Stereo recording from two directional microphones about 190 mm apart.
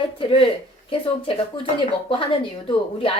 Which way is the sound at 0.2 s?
30° left (ahead or behind).